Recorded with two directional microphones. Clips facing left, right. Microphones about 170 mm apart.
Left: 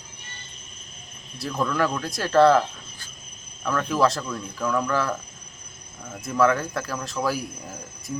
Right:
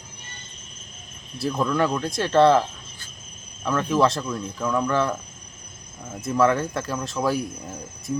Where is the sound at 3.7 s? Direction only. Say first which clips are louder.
Right 2 dB; 20° right (ahead or behind).